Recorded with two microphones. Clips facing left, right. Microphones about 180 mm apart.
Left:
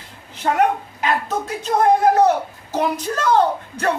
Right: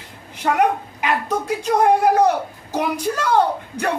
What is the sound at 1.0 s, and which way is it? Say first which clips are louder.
A woman's voice: even; 10° right (ahead or behind).